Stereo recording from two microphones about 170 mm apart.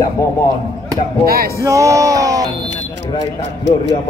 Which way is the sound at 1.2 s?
60° right (ahead or behind).